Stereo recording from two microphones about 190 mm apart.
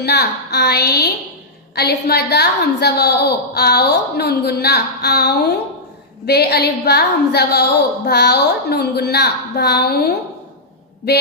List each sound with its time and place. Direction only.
0.0 s a woman's voice: 55° left (ahead or behind)